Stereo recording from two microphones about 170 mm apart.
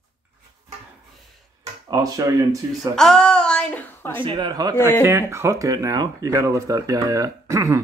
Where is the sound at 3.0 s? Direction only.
5° left (ahead or behind).